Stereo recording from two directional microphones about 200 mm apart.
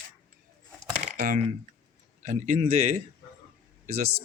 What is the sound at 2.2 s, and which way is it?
Speech, 35° right (ahead or behind).